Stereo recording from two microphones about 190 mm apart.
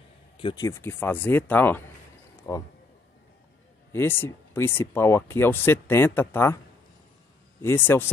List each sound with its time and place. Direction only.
0.4 s speech: 25° left (ahead or behind)
0.7 s speech: 15° left (ahead or behind)
3.9 s speech: 10° left (ahead or behind)
7.6 s speech: 10° left (ahead or behind)